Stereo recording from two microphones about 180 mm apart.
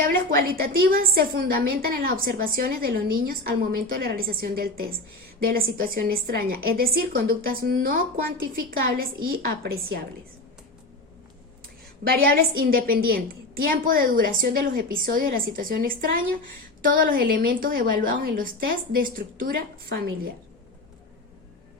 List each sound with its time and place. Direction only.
0.0 s a woman's voice: 50° right (ahead or behind)
12.0 s a woman's voice: 55° right (ahead or behind)